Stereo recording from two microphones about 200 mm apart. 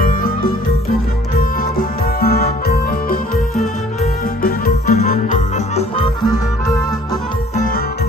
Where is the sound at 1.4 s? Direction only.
45° left (ahead or behind).